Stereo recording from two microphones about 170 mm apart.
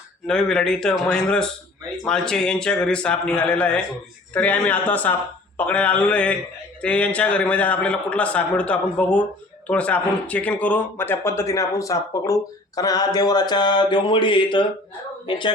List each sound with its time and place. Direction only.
0.3 s a man's voice: 5° left (ahead or behind); by 15.5 s 30° left (ahead or behind)